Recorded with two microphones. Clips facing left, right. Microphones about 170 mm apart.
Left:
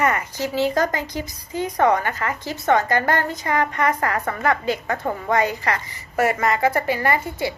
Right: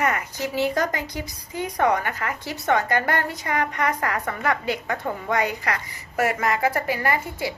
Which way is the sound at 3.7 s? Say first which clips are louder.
Left 3 dB; 15° right (ahead or behind).